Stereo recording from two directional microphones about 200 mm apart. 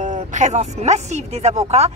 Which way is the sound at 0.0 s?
40° right (ahead or behind).